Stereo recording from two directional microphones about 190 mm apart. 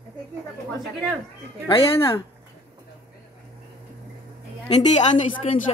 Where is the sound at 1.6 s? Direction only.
25° left (ahead or behind).